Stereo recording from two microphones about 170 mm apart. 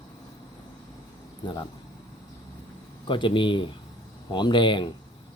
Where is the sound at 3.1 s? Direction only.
30° left (ahead or behind).